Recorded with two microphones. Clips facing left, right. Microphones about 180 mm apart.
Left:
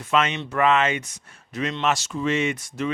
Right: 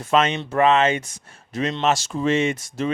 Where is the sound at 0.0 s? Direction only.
30° right (ahead or behind).